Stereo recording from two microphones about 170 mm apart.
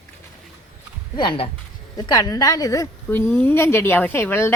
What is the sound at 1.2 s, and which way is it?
A woman's voice, 30° left (ahead or behind).